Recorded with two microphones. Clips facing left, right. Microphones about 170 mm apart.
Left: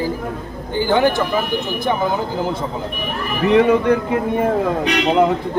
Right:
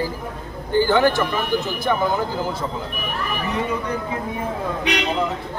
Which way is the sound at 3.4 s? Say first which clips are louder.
Left 14 dB; 80° left.